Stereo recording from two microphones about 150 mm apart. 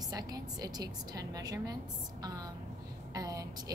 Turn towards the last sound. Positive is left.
turn(degrees=-25)  # may be behind; listen again after turning